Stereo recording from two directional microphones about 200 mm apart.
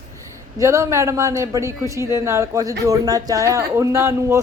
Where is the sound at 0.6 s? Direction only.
15° right (ahead or behind).